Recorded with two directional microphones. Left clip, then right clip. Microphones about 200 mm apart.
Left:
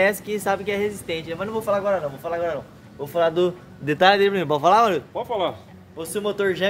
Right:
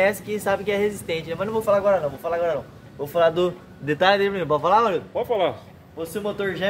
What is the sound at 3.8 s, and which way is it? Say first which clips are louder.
A man's voice: left 2 dB; 55° left (ahead or behind).